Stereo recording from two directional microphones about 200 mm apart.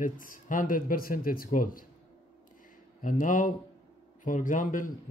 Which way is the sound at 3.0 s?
40° left (ahead or behind).